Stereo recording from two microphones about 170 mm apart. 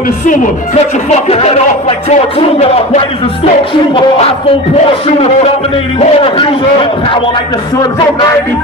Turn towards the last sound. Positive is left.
turn(degrees=30)  # may be behind; listen again after turning